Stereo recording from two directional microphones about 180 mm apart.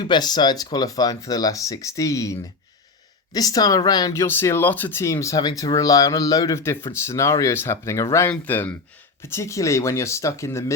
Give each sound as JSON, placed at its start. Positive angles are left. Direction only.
{"t": 0.0, "sound": "speech", "side_deg": 25}